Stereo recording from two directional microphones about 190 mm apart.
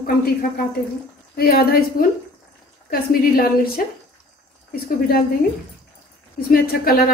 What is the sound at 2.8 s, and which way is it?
A woman's voice, 50° left (ahead or behind).